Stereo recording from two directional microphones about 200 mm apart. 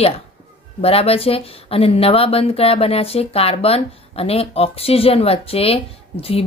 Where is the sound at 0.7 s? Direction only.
30° left (ahead or behind).